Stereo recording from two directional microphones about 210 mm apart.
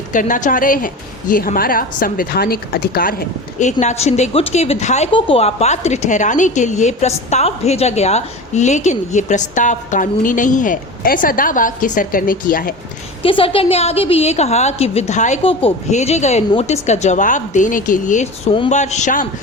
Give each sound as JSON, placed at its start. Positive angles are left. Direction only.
{"t": 0.1, "sound": "a woman's voice", "side_deg": 35}
{"t": 13.2, "sound": "a woman's voice", "side_deg": 25}